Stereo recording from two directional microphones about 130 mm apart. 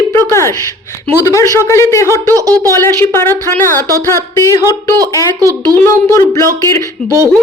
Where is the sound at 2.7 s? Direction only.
20° left (ahead or behind).